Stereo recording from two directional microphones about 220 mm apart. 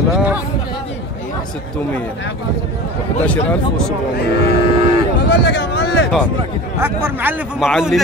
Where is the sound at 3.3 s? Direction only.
5° left (ahead or behind).